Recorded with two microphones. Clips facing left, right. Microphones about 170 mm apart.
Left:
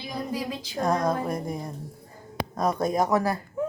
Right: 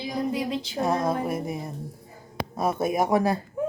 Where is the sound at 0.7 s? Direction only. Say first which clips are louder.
Left 1 dB; 5° right (ahead or behind).